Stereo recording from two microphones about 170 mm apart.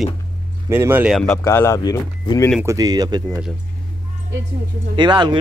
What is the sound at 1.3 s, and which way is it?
Speech, 15° left (ahead or behind).